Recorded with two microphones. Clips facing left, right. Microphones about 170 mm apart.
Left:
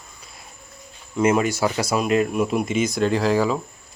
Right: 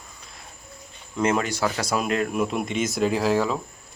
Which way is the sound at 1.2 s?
10° left (ahead or behind).